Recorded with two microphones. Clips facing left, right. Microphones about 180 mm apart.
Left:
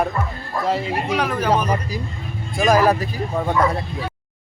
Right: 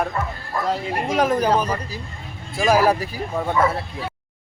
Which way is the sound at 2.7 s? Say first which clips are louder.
Left 1 dB; 10° right (ahead or behind).